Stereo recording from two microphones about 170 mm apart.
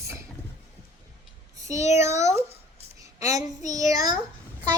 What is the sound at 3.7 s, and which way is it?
Speech, 20° right (ahead or behind).